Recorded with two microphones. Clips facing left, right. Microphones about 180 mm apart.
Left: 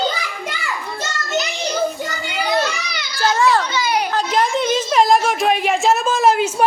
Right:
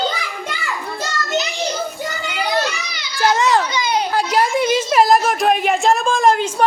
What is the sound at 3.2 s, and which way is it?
Children playing, 20° right (ahead or behind).